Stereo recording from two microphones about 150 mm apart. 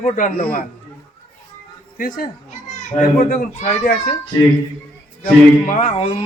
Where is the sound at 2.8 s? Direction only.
60° left (ahead or behind).